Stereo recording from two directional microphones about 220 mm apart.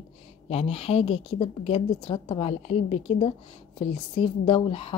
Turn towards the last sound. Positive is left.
turn(degrees=25)  # may be behind; listen again after turning